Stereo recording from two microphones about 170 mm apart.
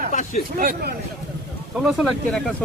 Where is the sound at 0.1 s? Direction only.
45° left (ahead or behind).